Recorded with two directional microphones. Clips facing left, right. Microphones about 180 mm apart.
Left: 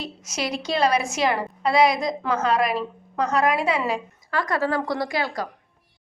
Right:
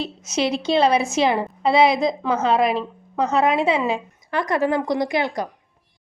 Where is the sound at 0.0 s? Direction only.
25° right (ahead or behind).